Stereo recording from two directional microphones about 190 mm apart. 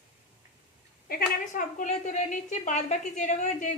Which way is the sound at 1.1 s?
45° left (ahead or behind).